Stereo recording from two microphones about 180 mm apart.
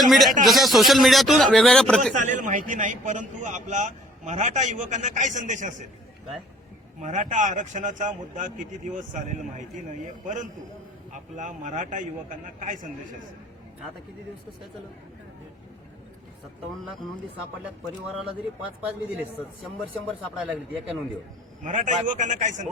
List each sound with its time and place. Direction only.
0.0 s speech: centre (ahead or behind)
2.1 s a man's voice: 45° right (ahead or behind)
7.0 s a man's voice: 45° right (ahead or behind)
11.1 s a man's voice: 45° right (ahead or behind)
18.8 s speech: 5° right (ahead or behind)
20.3 s speech: 5° right (ahead or behind)
21.6 s a man's voice: 40° right (ahead or behind)